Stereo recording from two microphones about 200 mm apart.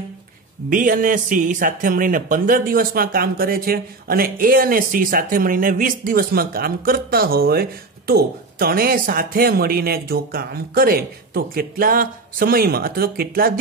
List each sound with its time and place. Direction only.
0.7 s a man's voice: 40° right (ahead or behind)